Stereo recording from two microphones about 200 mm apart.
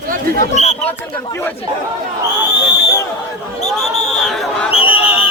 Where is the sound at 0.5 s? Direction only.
35° left (ahead or behind).